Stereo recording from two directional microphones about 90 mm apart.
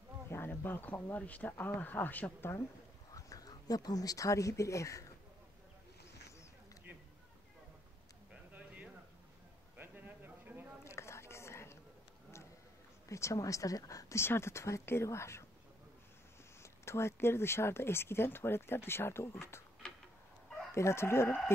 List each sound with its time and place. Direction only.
0.3 s speech: 25° left (ahead or behind)
3.1 s speech: 40° left (ahead or behind)
8.3 s a sound: 15° right (ahead or behind)
10.8 s a sound: 30° left (ahead or behind)
13.1 s speech: 35° left (ahead or behind)
16.6 s speech: 30° left (ahead or behind)
19.8 s tick-tock: 10° left (ahead or behind)
20.7 s speech: 30° left (ahead or behind)